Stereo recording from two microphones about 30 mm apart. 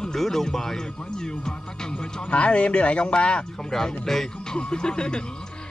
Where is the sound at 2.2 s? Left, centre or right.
Left.